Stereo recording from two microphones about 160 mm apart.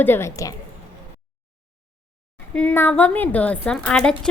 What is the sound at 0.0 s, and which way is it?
Speech, 15° left (ahead or behind).